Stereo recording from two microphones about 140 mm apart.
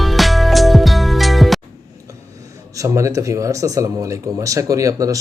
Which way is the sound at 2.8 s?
20° right (ahead or behind).